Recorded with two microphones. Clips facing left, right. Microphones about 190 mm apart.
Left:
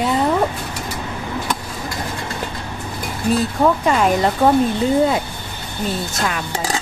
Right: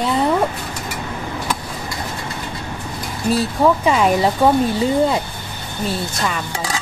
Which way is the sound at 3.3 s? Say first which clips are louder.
Right 1 dB; centre (ahead or behind).